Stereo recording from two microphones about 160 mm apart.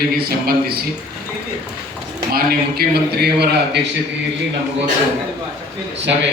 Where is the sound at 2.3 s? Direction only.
85° right.